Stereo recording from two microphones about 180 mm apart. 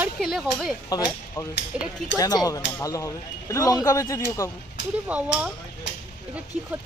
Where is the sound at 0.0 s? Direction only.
Centre (ahead or behind).